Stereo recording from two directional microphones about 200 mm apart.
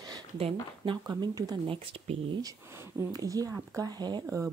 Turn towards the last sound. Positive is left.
turn(degrees=-20)  # may be behind; listen again after turning